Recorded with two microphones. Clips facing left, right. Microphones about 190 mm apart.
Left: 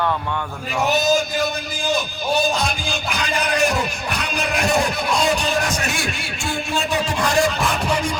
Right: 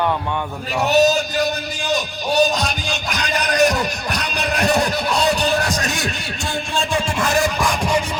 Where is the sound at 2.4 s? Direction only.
40° right (ahead or behind).